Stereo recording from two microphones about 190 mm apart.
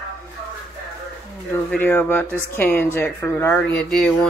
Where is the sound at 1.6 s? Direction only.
10° left (ahead or behind).